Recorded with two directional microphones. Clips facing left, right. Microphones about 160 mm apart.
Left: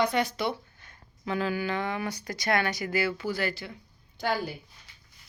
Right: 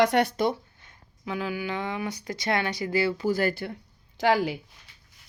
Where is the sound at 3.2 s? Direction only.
45° right (ahead or behind).